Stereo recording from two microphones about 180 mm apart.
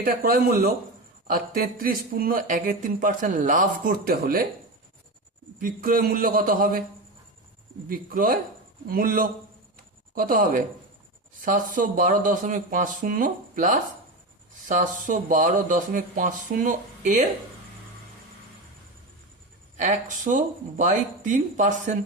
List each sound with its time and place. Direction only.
0.0 s speech: 50° right (ahead or behind)
5.5 s speech: 50° right (ahead or behind)
7.9 s speech: 50° right (ahead or behind)
9.7 s a sound: 50° right (ahead or behind)
11.3 s speech: 50° right (ahead or behind)
19.7 s speech: 45° right (ahead or behind)